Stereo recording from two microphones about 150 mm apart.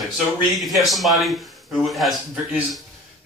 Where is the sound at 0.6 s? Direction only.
Centre (ahead or behind).